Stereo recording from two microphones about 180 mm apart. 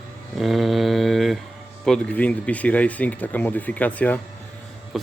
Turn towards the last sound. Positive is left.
turn(degrees=0)  # may be behind; listen again after turning